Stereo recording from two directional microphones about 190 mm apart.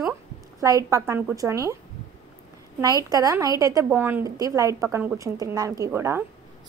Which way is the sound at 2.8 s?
20° right (ahead or behind).